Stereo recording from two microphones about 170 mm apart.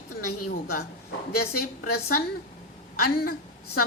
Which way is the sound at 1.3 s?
65° left (ahead or behind).